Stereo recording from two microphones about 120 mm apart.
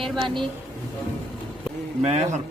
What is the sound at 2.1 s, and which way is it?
Speech, 75° right (ahead or behind).